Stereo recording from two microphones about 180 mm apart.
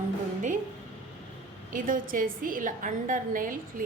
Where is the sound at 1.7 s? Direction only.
50° right (ahead or behind).